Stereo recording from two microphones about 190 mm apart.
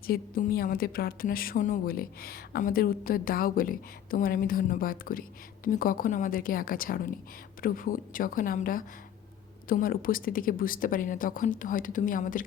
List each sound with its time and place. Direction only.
0.1 s a woman's voice: 50° left (ahead or behind)